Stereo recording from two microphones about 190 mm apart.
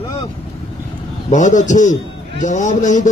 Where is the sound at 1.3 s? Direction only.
40° left (ahead or behind).